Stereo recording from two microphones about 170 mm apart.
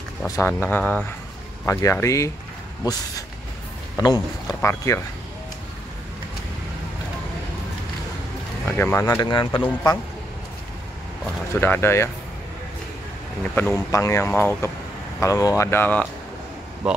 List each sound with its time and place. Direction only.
0.4 s speech: 10° left (ahead or behind)
8.6 s speech: 15° left (ahead or behind)
9.3 s speech: 25° left (ahead or behind)
11.6 s speech: 15° left (ahead or behind)
13.4 s speech: 10° left (ahead or behind)
16.8 s speech: 5° right (ahead or behind)